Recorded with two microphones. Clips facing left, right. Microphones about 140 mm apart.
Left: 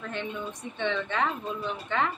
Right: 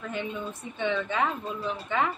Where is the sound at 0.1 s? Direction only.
5° right (ahead or behind).